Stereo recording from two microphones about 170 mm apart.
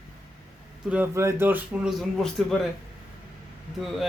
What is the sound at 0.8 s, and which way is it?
A man's voice, 10° right (ahead or behind).